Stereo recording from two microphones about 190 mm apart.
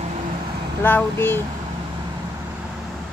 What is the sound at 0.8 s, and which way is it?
Speech, 10° left (ahead or behind).